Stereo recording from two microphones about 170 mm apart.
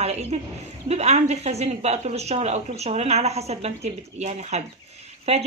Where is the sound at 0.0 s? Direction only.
40° right (ahead or behind).